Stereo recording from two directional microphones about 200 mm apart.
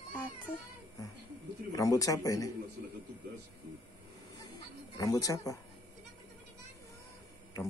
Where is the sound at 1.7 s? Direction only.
15° left (ahead or behind).